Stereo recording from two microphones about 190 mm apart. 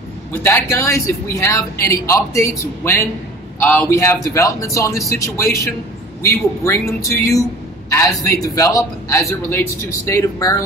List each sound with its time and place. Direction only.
0.3 s a man's voice: 15° left (ahead or behind)